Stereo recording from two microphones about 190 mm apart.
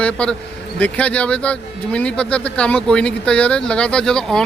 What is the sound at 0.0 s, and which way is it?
Speech, 5° left (ahead or behind).